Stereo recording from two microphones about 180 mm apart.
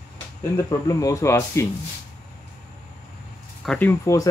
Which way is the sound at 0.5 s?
15° left (ahead or behind).